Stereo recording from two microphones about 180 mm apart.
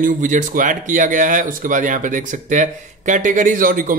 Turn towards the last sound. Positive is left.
turn(degrees=-50)  # may be behind; listen again after turning